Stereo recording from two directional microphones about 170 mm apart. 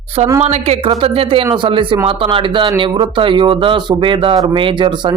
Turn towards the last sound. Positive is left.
turn(degrees=-30)  # may be behind; listen again after turning